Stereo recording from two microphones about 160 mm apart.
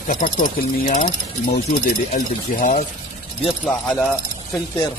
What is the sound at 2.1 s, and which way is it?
Speech, 50° left (ahead or behind).